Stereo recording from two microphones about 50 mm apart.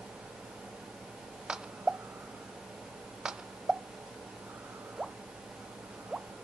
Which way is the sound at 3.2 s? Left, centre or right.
Centre.